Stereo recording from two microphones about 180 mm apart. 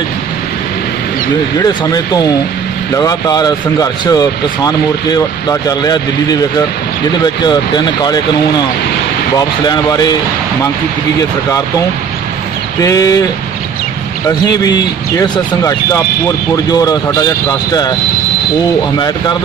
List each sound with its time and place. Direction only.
1.6 s speech: 20° left (ahead or behind)
7.4 s speech: 25° left (ahead or behind)
9.7 s speech: 20° left (ahead or behind)
12.8 s speech: 20° left (ahead or behind)
14.2 s speech: 20° left (ahead or behind)